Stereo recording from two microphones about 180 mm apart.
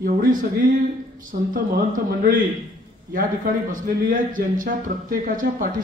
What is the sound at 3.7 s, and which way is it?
Speech, 50° right (ahead or behind).